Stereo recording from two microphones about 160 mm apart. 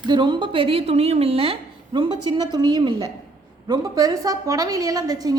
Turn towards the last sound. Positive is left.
turn(degrees=-25)  # may be behind; listen again after turning